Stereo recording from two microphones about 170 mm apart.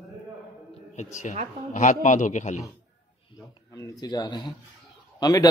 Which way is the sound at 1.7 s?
50° left (ahead or behind).